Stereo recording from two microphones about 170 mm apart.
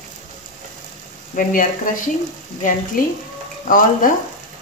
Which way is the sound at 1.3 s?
50° left (ahead or behind).